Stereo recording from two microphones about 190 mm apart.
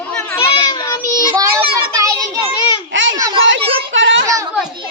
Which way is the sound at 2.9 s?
80° right.